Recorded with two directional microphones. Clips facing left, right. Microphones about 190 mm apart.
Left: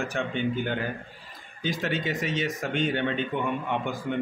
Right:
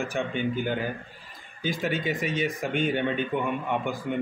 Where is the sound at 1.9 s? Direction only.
50° right (ahead or behind).